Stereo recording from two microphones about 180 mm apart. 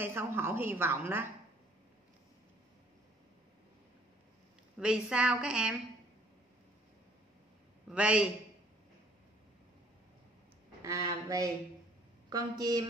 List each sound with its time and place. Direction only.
0.0 s a woman's voice: 15° right (ahead or behind)
4.7 s a woman's voice: 5° right (ahead or behind)
7.9 s a woman's voice: 5° right (ahead or behind)
10.8 s speech: 20° right (ahead or behind)